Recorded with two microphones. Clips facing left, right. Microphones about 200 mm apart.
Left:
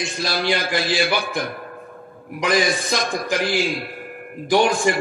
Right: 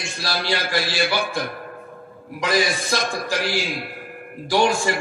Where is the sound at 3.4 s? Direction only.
50° left (ahead or behind).